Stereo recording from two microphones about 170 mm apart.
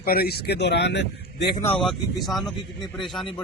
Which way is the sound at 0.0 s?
60° left (ahead or behind).